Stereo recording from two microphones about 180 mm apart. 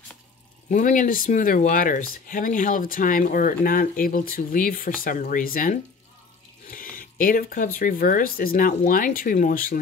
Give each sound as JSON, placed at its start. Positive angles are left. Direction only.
{"t": 0.7, "sound": "speech", "side_deg": 45}
{"t": 6.7, "sound": "a sound", "side_deg": 50}
{"t": 7.8, "sound": "speech", "side_deg": 50}